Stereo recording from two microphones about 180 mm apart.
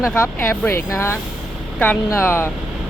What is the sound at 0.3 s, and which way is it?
Speech, 10° left (ahead or behind).